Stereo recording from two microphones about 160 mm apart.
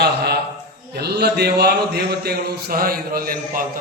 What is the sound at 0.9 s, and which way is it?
Speech, 90° right.